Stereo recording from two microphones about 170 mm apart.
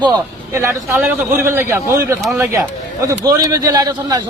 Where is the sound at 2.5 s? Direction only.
15° right (ahead or behind).